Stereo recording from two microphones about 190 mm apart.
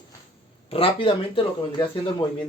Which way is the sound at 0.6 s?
30° left (ahead or behind).